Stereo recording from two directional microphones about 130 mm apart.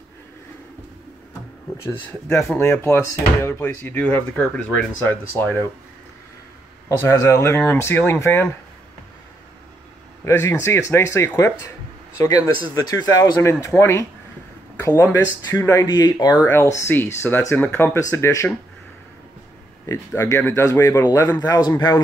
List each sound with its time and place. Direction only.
2.5 s speech: 20° left (ahead or behind)
6.9 s speech: 25° left (ahead or behind)
10.2 s speech: 20° left (ahead or behind)
20.2 s speech: 20° left (ahead or behind)